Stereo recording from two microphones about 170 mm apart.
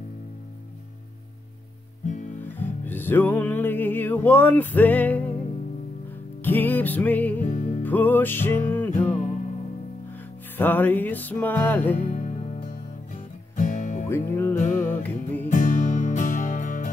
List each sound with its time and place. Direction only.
2.4 s music: 10° left (ahead or behind)
6.4 s music: 10° left (ahead or behind)
7.4 s music: 45° left (ahead or behind)
7.8 s music: 10° left (ahead or behind)
9.1 s music: 50° left (ahead or behind)
10.6 s music: 10° left (ahead or behind)
12.1 s music: 45° left (ahead or behind)
14.0 s music: 15° left (ahead or behind)
14.5 s music: 45° left (ahead or behind)
14.8 s music: 10° left (ahead or behind)
15.4 s music: 50° left (ahead or behind)